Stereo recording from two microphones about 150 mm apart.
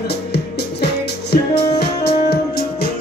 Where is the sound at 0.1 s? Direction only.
90° left.